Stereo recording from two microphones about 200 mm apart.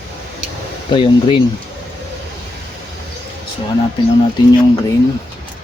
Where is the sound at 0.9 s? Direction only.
25° left (ahead or behind).